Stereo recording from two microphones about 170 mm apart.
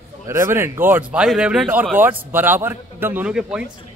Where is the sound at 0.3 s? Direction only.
15° right (ahead or behind).